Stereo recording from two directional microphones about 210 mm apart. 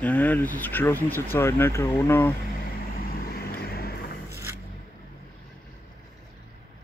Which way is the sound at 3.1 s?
45° left (ahead or behind).